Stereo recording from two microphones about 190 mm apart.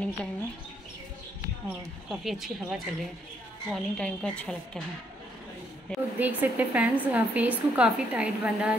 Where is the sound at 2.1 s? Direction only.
Centre (ahead or behind).